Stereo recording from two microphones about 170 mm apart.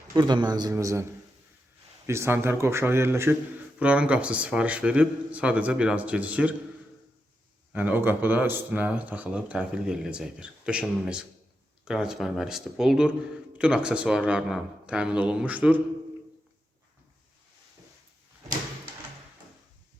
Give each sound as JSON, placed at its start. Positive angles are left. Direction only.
{"t": 0.1, "sound": "a man's voice", "side_deg": -25}
{"t": 2.0, "sound": "speech", "side_deg": -15}
{"t": 7.7, "sound": "speech", "side_deg": -10}